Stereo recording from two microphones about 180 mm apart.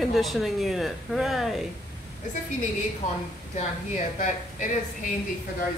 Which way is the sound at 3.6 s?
40° left (ahead or behind).